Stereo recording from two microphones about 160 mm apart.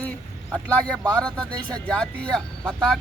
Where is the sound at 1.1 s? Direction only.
5° left (ahead or behind).